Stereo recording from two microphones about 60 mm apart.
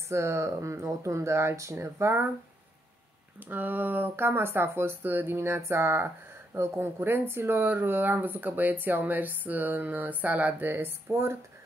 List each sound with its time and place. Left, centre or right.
0.1 s speech: right
3.3 s speech: right